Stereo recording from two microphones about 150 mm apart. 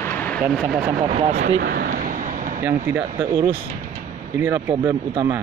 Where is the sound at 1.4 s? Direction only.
85° right.